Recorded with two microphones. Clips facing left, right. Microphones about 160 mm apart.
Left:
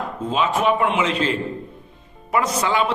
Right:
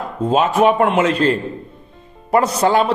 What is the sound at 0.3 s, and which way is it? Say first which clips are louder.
A man's voice: right 6 dB; 45° right (ahead or behind).